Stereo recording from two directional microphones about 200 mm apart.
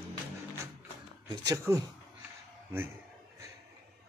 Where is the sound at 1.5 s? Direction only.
15° right (ahead or behind).